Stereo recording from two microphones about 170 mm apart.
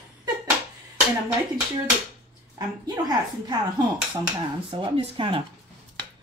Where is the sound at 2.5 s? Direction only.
25° right (ahead or behind).